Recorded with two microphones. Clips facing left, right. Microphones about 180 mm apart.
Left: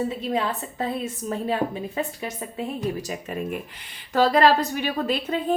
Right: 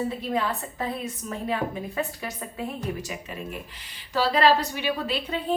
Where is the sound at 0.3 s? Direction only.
30° left (ahead or behind).